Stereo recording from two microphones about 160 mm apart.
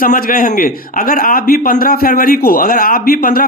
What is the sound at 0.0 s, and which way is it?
A man's voice, 65° left (ahead or behind).